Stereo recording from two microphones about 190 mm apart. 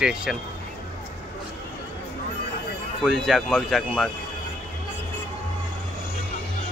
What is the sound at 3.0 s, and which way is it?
Speech, centre (ahead or behind).